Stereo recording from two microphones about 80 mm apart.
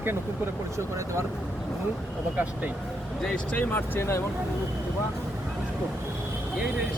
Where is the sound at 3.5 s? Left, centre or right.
Left.